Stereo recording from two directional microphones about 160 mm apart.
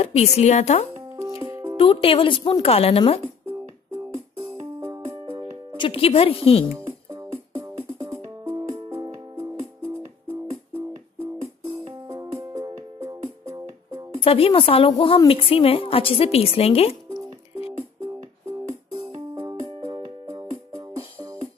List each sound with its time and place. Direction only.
0.0 s speech: 40° left (ahead or behind)
1.1 s music: 20° right (ahead or behind)
1.8 s a woman's voice: 35° left (ahead or behind)
4.1 s music: 35° right (ahead or behind)
5.8 s a woman's voice: 35° left (ahead or behind)
6.7 s music: 20° right (ahead or behind)
12.1 s music: 20° right (ahead or behind)
14.2 s a woman's voice: 35° left (ahead or behind)
18.9 s music: 30° right (ahead or behind)